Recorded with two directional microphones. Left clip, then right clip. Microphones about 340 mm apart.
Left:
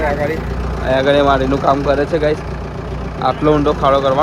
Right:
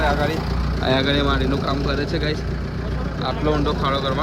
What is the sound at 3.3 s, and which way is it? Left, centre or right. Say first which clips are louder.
Speech: left 9 dB; left.